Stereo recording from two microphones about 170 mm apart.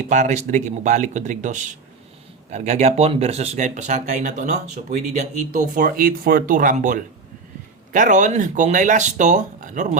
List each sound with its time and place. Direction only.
0.0 s speech: 45° right (ahead or behind)